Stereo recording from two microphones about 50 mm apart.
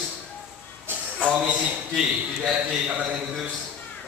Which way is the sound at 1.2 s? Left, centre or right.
Right.